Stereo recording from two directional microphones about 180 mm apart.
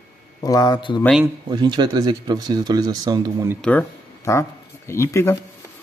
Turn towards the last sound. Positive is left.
turn(degrees=15)  # may be behind; listen again after turning